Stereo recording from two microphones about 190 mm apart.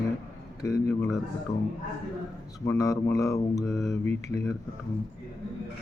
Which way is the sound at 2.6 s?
15° left (ahead or behind).